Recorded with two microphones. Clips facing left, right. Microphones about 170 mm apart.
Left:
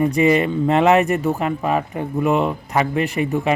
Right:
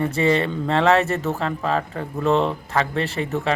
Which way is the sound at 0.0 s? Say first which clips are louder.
Left 4 dB; 15° left (ahead or behind).